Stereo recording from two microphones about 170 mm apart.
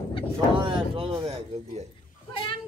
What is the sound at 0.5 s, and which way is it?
Speech, 30° right (ahead or behind).